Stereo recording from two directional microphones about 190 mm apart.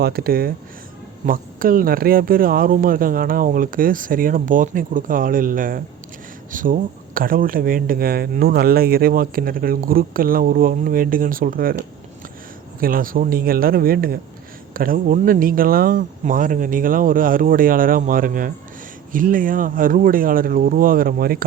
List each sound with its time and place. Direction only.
0.0 s speech: 55° right (ahead or behind)
12.8 s speech: 50° right (ahead or behind)